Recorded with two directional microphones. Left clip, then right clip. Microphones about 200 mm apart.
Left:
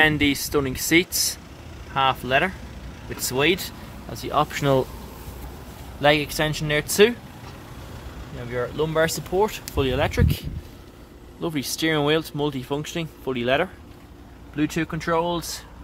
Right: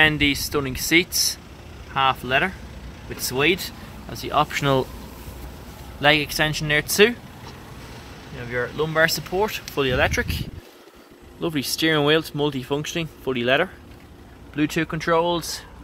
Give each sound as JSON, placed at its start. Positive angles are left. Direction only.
{"t": 0.0, "sound": "speech", "side_deg": 15}
{"t": 5.9, "sound": "speech", "side_deg": 10}
{"t": 8.5, "sound": "speech", "side_deg": 5}
{"t": 11.4, "sound": "speech", "side_deg": -5}